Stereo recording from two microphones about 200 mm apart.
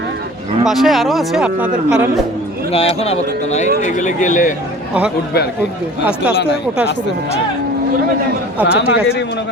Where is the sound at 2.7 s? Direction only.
30° left (ahead or behind).